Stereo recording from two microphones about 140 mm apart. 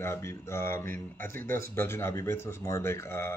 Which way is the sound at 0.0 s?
20° left (ahead or behind).